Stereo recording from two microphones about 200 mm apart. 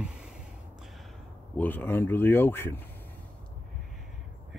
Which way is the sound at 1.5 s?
10° left (ahead or behind).